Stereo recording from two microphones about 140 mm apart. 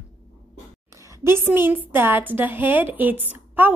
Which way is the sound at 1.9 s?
15° right (ahead or behind).